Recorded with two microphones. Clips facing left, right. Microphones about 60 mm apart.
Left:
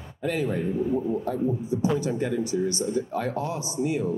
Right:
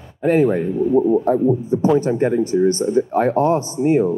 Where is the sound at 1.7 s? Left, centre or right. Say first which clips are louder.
Right 8 dB; right.